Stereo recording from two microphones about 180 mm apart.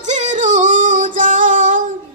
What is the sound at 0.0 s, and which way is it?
Female singing, 40° right (ahead or behind).